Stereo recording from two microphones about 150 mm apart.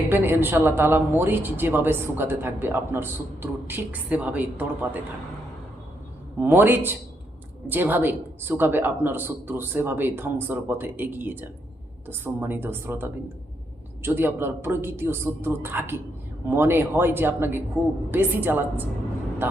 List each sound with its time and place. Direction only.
0.1 s speech: 15° right (ahead or behind)
6.4 s speech: 15° right (ahead or behind)